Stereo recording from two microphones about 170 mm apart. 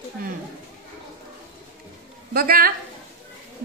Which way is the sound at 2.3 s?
60° right (ahead or behind).